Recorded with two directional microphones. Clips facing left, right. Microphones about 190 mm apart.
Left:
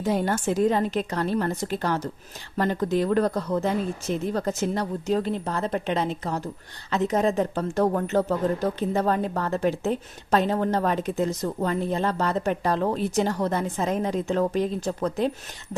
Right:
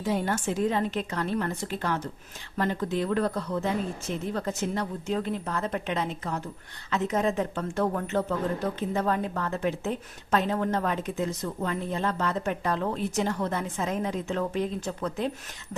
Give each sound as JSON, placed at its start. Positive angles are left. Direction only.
{"t": 0.0, "sound": "speech", "side_deg": 40}